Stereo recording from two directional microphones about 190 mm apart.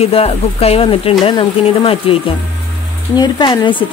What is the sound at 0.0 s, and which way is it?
Speech, 30° left (ahead or behind).